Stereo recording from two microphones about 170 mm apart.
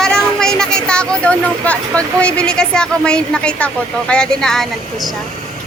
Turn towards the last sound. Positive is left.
turn(degrees=5)  # may be behind; listen again after turning